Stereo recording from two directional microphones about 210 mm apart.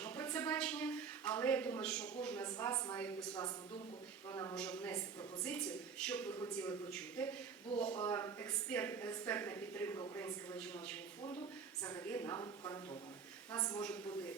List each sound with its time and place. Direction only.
0.0 s a sound: 10° left (ahead or behind)
2.2 s a woman's voice: 10° left (ahead or behind)
4.5 s a woman's voice: 5° left (ahead or behind)